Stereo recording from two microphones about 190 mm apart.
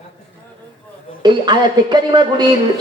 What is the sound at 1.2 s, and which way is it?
A man's voice, 25° right (ahead or behind).